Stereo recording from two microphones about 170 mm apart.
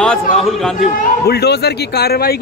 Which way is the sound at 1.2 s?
70° left (ahead or behind).